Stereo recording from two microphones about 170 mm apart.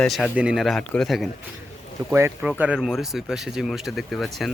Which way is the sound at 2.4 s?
5° right (ahead or behind).